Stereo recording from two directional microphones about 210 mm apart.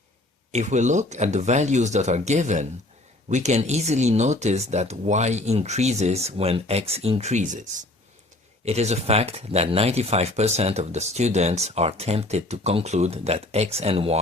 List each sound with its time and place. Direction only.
0.5 s speech: 35° right (ahead or behind)